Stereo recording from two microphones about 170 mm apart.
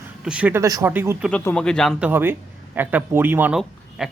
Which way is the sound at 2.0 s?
10° right (ahead or behind).